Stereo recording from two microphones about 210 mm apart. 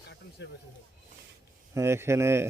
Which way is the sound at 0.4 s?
55° left (ahead or behind).